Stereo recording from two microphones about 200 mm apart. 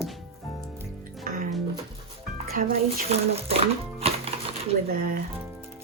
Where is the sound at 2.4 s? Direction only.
40° right (ahead or behind).